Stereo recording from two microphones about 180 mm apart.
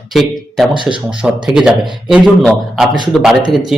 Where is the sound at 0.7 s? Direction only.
25° right (ahead or behind).